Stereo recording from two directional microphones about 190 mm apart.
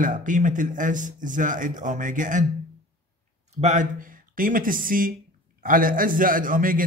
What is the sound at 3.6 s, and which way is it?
A man's voice, 40° right (ahead or behind).